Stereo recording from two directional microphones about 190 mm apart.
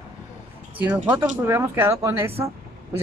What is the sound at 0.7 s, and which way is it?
Speech, 10° right (ahead or behind).